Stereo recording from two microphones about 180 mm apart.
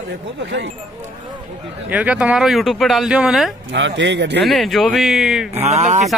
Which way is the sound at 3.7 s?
85° right.